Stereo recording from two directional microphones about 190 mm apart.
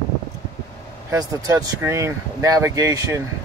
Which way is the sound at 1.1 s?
20° right (ahead or behind).